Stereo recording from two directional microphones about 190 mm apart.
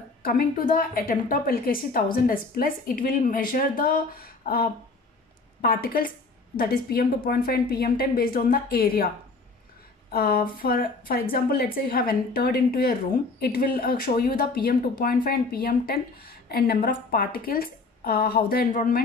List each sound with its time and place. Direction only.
0.2 s a woman's voice: 50° left (ahead or behind)
10.1 s a woman's voice: 55° left (ahead or behind)